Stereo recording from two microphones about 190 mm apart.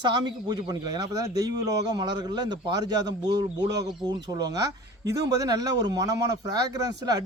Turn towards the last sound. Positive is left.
turn(degrees=-20)  # may be behind; listen again after turning